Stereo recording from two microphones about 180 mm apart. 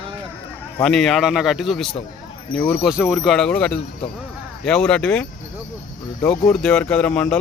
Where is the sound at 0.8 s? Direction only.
Centre (ahead or behind).